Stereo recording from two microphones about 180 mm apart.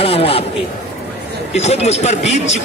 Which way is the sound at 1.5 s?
40° left (ahead or behind).